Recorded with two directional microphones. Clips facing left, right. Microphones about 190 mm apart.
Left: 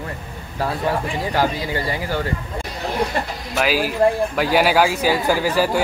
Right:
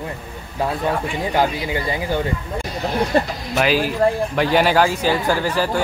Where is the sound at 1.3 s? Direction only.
20° right (ahead or behind).